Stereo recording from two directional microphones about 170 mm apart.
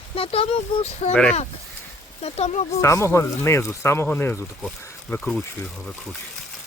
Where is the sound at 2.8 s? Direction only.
15° left (ahead or behind).